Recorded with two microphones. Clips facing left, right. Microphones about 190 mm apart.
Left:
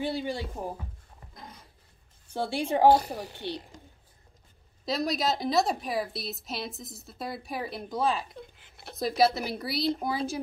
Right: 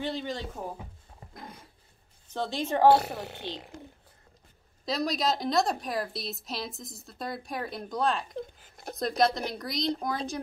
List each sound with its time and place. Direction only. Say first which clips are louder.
0.0 s speech: left 2 dB; 10° left (ahead or behind)
2.2 s speech: left 2 dB; 10° left (ahead or behind)
2.9 s speech: even; 65° right (ahead or behind)
4.8 s a woman's voice: even; centre (ahead or behind)
8.5 s a sound: right 6 dB; 40° right (ahead or behind)
8.9 s a woman's voice: left 1 dB; 5° left (ahead or behind)